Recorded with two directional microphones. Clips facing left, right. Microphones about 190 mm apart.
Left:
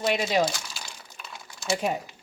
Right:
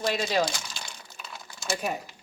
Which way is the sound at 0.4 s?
5° left (ahead or behind).